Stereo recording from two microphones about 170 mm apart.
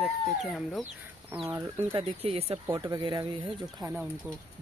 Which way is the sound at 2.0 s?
35° right (ahead or behind).